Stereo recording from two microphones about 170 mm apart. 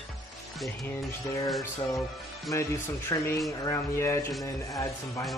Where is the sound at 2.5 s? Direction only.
15° left (ahead or behind).